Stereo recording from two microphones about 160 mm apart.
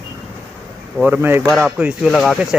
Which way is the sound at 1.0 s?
10° right (ahead or behind).